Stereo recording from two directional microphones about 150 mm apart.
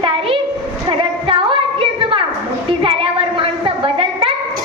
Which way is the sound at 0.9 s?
35° right (ahead or behind).